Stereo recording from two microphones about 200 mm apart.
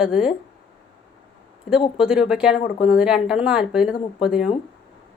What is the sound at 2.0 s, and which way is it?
A woman's voice, 5° right (ahead or behind).